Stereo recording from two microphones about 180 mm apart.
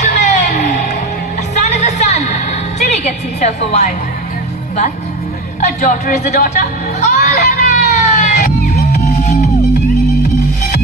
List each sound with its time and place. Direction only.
0.2 s music: 40° left (ahead or behind)
3.0 s a sound: 40° left (ahead or behind)
5.6 s speech: 45° left (ahead or behind)
7.1 s music: 50° left (ahead or behind)